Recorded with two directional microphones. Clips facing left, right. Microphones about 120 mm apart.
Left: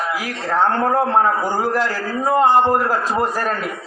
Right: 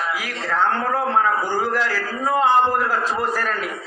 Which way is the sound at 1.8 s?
15° left (ahead or behind).